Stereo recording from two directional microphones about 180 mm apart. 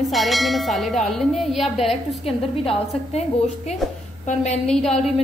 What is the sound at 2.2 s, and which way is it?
A woman's voice, 30° left (ahead or behind).